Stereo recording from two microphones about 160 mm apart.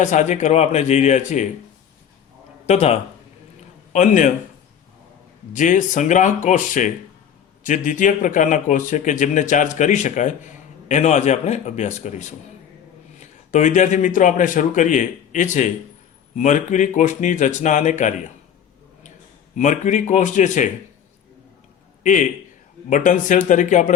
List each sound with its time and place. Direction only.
0.0 s a man's voice: 50° left (ahead or behind)
2.6 s a man's voice: 45° left (ahead or behind)
5.5 s a man's voice: 50° left (ahead or behind)
19.5 s a man's voice: 50° left (ahead or behind)
22.0 s a man's voice: 50° left (ahead or behind)